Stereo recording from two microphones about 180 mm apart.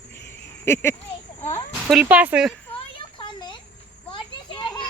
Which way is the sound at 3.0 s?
30° left (ahead or behind).